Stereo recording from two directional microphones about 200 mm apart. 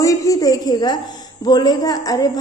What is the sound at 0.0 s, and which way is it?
A woman's voice, 15° left (ahead or behind).